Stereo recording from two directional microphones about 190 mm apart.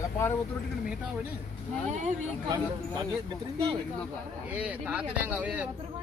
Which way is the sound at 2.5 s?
20° right (ahead or behind).